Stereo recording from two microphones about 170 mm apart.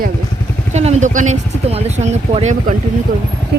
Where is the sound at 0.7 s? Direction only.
40° right (ahead or behind).